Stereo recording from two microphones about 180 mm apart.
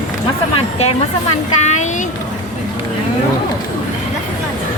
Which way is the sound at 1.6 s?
40° left (ahead or behind).